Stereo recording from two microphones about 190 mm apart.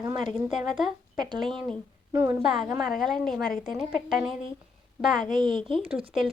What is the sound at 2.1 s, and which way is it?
Speech, 15° right (ahead or behind).